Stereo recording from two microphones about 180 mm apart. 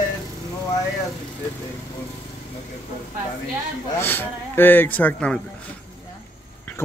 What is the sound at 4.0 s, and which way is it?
Speech, 10° left (ahead or behind).